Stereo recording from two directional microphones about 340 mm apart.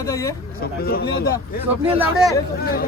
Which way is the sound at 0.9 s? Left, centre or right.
Left.